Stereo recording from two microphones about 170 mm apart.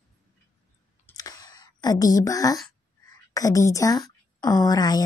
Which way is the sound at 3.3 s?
20° left (ahead or behind).